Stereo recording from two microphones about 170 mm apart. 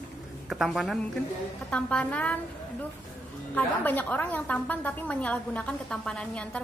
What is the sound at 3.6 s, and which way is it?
A woman's voice, 10° left (ahead or behind).